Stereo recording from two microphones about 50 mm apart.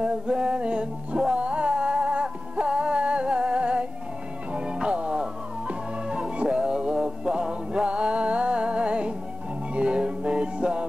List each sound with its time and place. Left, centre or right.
0.0 s music: right